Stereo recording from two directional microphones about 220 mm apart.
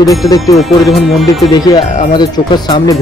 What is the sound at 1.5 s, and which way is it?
Speech, 20° left (ahead or behind).